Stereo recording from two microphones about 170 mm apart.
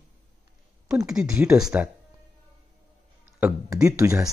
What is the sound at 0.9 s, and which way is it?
Speech, 5° right (ahead or behind).